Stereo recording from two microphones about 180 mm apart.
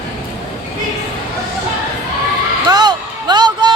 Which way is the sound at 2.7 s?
25° right (ahead or behind).